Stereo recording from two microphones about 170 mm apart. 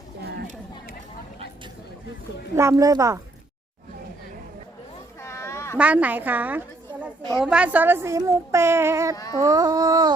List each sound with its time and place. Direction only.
2.6 s speech: 20° right (ahead or behind)
5.2 s a sound: 15° left (ahead or behind)
5.7 s a woman's voice: 10° right (ahead or behind)